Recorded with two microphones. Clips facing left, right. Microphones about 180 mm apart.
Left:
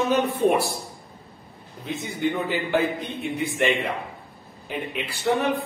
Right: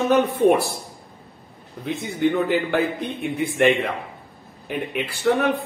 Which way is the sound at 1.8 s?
60° right (ahead or behind).